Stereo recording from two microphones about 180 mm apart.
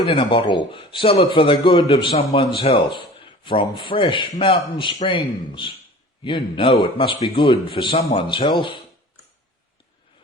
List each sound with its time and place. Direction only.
0.0 s a man's voice: 30° left (ahead or behind)